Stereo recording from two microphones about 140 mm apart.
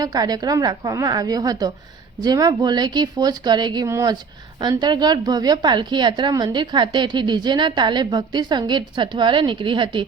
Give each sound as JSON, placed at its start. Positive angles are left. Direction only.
{"t": 0.0, "sound": "a woman's voice", "side_deg": -25}